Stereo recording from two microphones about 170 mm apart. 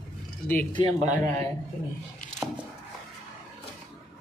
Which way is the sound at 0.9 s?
40° right (ahead or behind).